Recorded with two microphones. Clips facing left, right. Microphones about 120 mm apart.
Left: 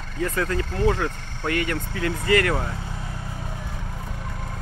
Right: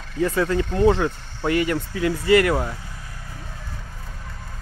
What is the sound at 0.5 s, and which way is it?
Speech, 20° right (ahead or behind).